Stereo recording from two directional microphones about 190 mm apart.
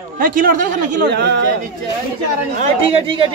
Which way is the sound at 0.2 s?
45° right (ahead or behind).